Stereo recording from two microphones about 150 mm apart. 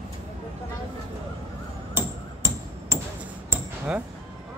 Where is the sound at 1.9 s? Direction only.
20° right (ahead or behind).